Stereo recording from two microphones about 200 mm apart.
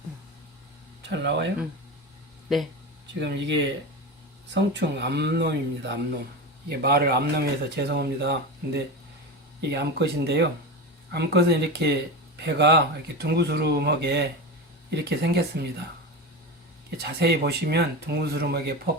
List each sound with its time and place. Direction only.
1.0 s speech: 60° right (ahead or behind)
3.2 s speech: 60° right (ahead or behind)
17.0 s speech: 55° right (ahead or behind)